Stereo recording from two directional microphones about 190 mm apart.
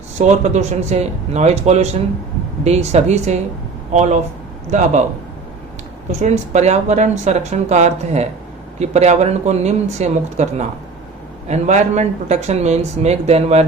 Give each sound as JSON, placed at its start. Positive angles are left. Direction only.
{"t": 0.2, "sound": "speech", "side_deg": -35}
{"t": 6.1, "sound": "speech", "side_deg": -35}